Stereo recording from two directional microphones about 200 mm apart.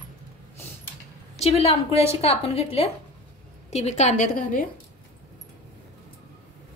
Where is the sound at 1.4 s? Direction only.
30° left (ahead or behind).